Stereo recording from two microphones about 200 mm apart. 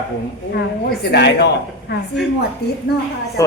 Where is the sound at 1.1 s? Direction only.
55° left (ahead or behind).